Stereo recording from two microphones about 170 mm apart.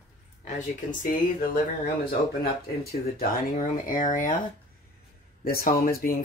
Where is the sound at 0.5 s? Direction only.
55° left (ahead or behind).